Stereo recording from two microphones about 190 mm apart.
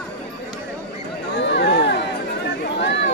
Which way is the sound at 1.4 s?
65° left (ahead or behind).